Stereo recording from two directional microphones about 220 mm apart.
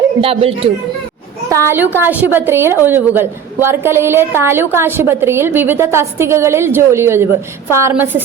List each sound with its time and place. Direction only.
0.2 s speech: 25° right (ahead or behind)
1.5 s a woman's voice: 15° right (ahead or behind)